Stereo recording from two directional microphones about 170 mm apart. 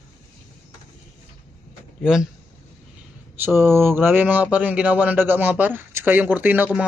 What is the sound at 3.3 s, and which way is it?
Speech, 10° right (ahead or behind).